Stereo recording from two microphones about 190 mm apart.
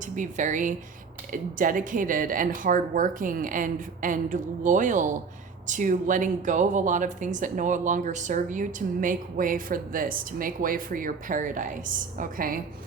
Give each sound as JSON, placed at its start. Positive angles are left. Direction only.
{"t": 0.2, "sound": "speech", "side_deg": -40}